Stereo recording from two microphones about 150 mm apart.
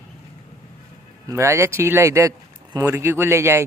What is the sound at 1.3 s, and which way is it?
Speech, 20° right (ahead or behind).